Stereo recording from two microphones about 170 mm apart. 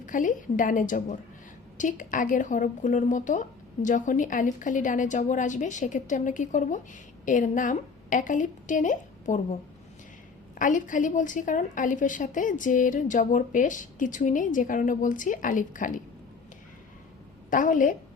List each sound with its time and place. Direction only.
0.0 s a woman's voice: 50° left (ahead or behind)
10.6 s a woman's voice: 50° left (ahead or behind)
17.5 s a woman's voice: 50° left (ahead or behind)